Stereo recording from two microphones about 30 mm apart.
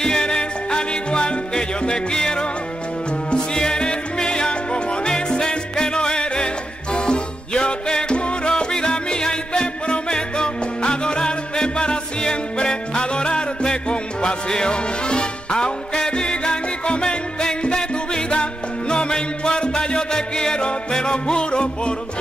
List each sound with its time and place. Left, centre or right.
0.0 s music: left